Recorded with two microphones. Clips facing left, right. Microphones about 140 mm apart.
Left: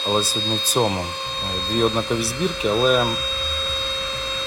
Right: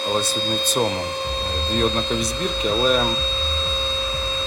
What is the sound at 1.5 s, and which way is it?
Speech, centre (ahead or behind).